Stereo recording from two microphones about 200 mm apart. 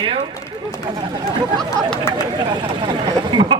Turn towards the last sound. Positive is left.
turn(degrees=-20)  # may be behind; listen again after turning